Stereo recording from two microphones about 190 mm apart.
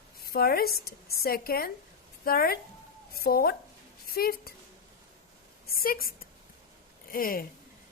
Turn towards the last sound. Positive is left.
turn(degrees=50)  # may be behind; listen again after turning